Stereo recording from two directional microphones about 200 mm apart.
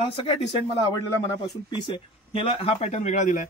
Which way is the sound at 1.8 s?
25° left (ahead or behind).